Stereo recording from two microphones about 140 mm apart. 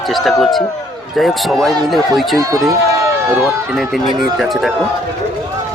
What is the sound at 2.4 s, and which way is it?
Speech, 25° right (ahead or behind).